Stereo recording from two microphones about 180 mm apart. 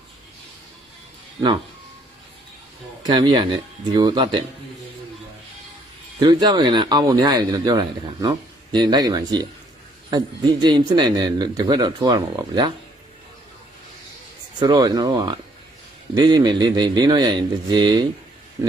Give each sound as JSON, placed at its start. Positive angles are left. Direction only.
{"t": 3.0, "sound": "speech", "side_deg": -25}
{"t": 6.1, "sound": "speech", "side_deg": -20}
{"t": 14.6, "sound": "speech", "side_deg": -20}